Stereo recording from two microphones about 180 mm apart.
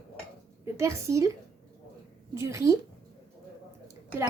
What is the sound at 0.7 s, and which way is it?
Speech, 15° right (ahead or behind).